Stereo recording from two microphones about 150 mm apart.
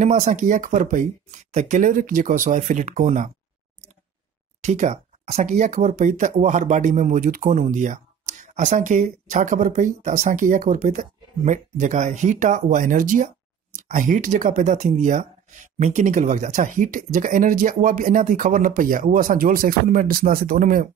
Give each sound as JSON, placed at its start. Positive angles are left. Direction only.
{"t": 0.0, "sound": "speech", "side_deg": -55}
{"t": 4.6, "sound": "speech", "side_deg": -55}